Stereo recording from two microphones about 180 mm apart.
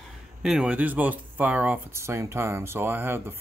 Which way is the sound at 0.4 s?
5° right (ahead or behind).